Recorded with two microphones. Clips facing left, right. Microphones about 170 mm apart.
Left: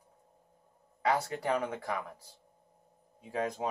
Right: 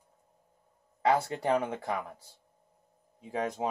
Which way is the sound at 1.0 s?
30° right (ahead or behind).